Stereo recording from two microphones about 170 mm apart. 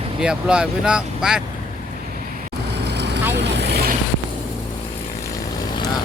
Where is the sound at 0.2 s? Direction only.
5° right (ahead or behind).